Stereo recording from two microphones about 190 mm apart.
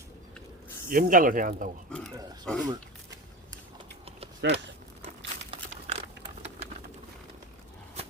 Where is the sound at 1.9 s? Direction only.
5° left (ahead or behind).